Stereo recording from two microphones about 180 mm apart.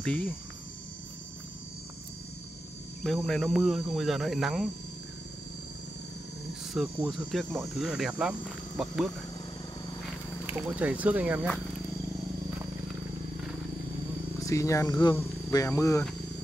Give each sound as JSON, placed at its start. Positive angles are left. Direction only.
{"t": 0.0, "sound": "speech", "side_deg": 5}
{"t": 3.0, "sound": "speech", "side_deg": 0}
{"t": 6.7, "sound": "speech", "side_deg": 0}
{"t": 10.4, "sound": "speech", "side_deg": -5}
{"t": 14.4, "sound": "speech", "side_deg": 15}